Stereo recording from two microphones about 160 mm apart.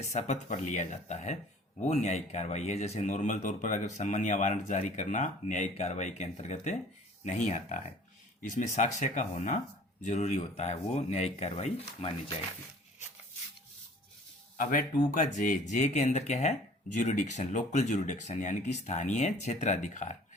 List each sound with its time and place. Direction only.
0.1 s speech: 45° left (ahead or behind)
14.6 s speech: 60° left (ahead or behind)